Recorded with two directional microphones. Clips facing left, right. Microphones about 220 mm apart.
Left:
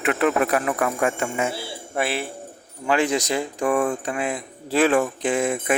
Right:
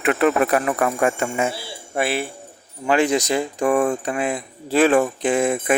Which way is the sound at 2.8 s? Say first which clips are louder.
Right 3 dB; 20° right (ahead or behind).